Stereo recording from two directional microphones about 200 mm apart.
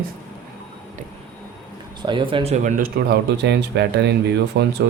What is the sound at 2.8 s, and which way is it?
Speech, 55° right (ahead or behind).